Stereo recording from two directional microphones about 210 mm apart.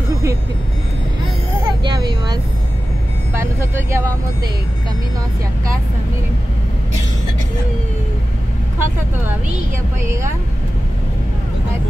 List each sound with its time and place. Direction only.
1.8 s vehicle: 20° right (ahead or behind)
3.3 s vehicle: 10° right (ahead or behind)